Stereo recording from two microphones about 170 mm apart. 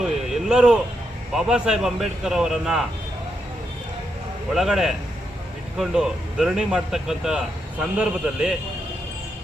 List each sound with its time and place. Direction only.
0.0 s a sound: centre (ahead or behind)
1.3 s speech: 5° right (ahead or behind)
4.5 s speech: centre (ahead or behind)